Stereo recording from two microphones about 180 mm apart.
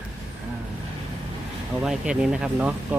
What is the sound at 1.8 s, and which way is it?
Speech, 5° right (ahead or behind).